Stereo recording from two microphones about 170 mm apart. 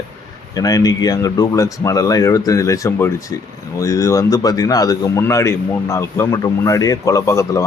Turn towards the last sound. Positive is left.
turn(degrees=20)  # may be behind; listen again after turning